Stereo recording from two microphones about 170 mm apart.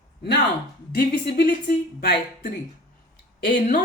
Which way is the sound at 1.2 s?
70° left (ahead or behind).